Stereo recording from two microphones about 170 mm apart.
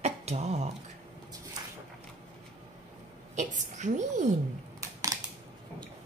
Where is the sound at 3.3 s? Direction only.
45° right (ahead or behind).